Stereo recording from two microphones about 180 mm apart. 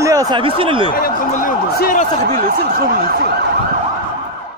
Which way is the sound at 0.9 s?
55° left (ahead or behind).